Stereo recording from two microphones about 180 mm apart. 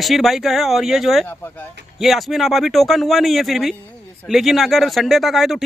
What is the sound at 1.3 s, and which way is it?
Speech, 10° left (ahead or behind).